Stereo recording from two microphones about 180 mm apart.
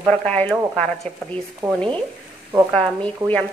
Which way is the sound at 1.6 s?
10° right (ahead or behind).